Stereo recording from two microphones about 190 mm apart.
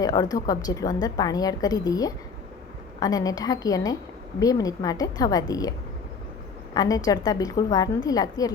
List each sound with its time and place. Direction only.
0.0 s a woman's voice: 20° left (ahead or behind)
6.7 s a woman's voice: 20° left (ahead or behind)